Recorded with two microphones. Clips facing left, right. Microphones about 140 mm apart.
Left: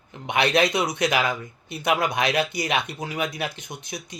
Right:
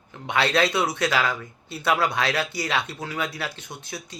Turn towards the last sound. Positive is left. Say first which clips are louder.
# left 1 dB
turn(degrees=20)  # may be behind; listen again after turning